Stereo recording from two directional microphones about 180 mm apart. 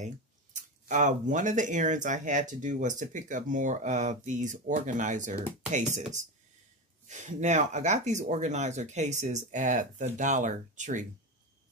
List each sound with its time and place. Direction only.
0.6 s speech: 45° right (ahead or behind)